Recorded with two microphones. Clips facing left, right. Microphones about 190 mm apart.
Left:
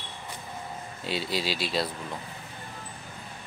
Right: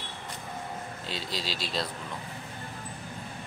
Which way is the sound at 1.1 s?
10° left (ahead or behind).